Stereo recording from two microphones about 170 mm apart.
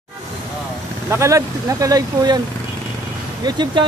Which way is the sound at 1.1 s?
15° right (ahead or behind).